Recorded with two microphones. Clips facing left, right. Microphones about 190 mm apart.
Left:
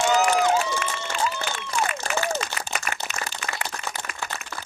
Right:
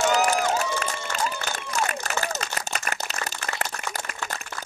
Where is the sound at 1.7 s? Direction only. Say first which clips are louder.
Left 1 dB; 40° right (ahead or behind).